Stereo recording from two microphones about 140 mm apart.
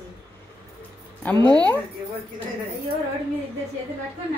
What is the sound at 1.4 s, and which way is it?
Speech, 30° right (ahead or behind).